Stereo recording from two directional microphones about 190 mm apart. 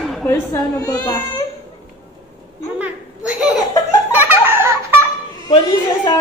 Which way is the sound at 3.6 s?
20° left (ahead or behind).